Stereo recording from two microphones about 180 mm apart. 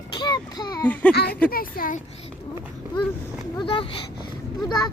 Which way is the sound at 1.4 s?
55° left (ahead or behind).